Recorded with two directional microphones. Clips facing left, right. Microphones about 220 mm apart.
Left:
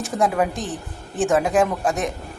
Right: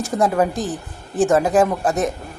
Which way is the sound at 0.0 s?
Centre (ahead or behind).